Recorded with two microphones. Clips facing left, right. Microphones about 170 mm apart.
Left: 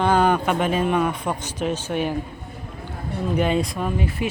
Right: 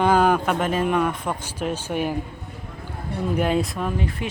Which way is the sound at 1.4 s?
10° right (ahead or behind).